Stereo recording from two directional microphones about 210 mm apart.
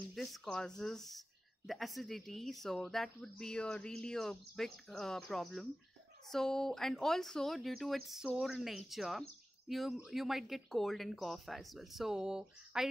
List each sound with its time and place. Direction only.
0.1 s speech: centre (ahead or behind)